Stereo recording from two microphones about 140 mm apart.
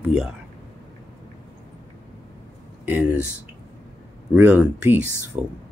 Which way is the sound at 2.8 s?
15° right (ahead or behind).